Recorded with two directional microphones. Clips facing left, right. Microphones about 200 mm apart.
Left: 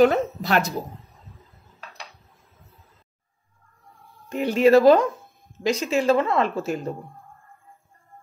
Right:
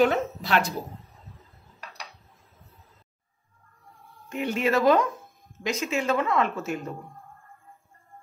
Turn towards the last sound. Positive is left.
turn(degrees=35)  # may be behind; listen again after turning